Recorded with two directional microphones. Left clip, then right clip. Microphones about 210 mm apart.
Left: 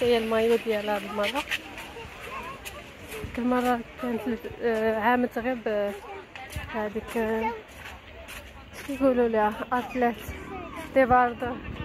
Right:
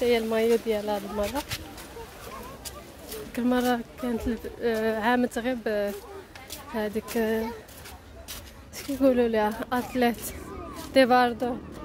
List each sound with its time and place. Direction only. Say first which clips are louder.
0.0 s speech: left 1 dB; 15° right (ahead or behind)
3.3 s speech: even; 20° right (ahead or behind)
9.0 s speech: even; 25° right (ahead or behind)